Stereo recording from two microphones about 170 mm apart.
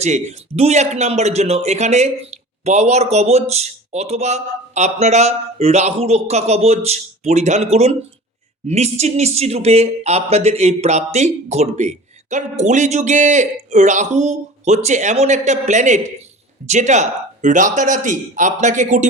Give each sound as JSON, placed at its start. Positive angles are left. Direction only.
{"t": 0.0, "sound": "a man's voice", "side_deg": -40}